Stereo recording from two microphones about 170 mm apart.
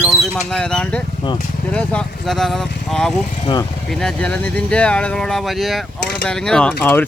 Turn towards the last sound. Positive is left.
turn(degrees=10)  # may be behind; listen again after turning